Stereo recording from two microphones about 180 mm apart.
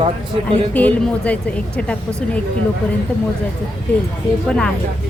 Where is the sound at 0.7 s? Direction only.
10° left (ahead or behind).